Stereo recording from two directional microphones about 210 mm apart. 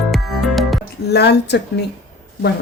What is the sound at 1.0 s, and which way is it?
Speech, 50° left (ahead or behind).